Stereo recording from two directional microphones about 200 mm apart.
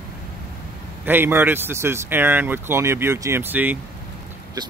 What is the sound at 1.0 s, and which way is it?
Speech, 10° right (ahead or behind).